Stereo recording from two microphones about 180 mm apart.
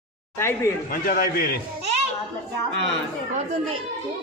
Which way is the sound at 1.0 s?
50° left (ahead or behind).